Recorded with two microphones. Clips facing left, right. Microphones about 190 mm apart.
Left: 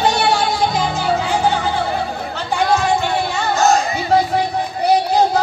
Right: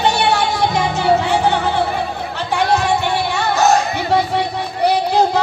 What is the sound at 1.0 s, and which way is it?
Music, 70° right (ahead or behind).